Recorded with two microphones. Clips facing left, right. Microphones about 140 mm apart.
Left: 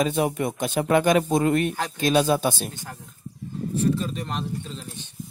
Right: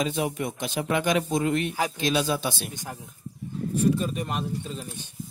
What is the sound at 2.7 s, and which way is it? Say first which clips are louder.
Speech: right 2 dB; 15° right (ahead or behind).